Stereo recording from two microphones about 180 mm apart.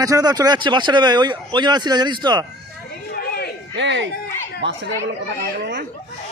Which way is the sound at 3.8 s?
80° right.